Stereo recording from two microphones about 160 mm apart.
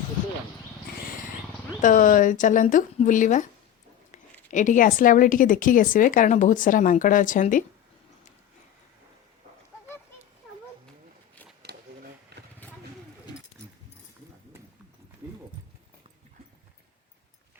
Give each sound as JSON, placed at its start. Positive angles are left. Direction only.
{"t": 1.8, "sound": "speech", "side_deg": 55}
{"t": 4.5, "sound": "speech", "side_deg": 50}
{"t": 11.6, "sound": "a sound", "side_deg": -90}